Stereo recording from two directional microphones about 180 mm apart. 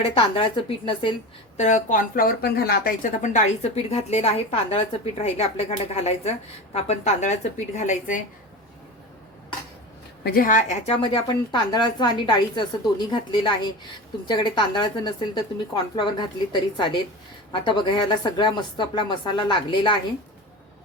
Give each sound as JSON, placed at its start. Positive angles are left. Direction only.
{"t": 0.0, "sound": "a woman's voice", "side_deg": 30}
{"t": 1.5, "sound": "speech", "side_deg": 40}
{"t": 10.2, "sound": "speech", "side_deg": 50}
{"t": 10.8, "sound": "a woman's voice", "side_deg": 30}